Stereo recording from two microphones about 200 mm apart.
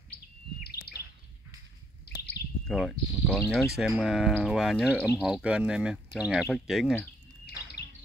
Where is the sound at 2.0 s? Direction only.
55° left (ahead or behind).